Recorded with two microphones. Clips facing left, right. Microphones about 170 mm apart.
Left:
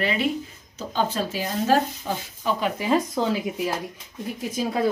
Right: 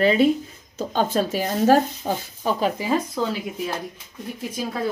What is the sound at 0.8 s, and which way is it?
Speech, 50° right (ahead or behind).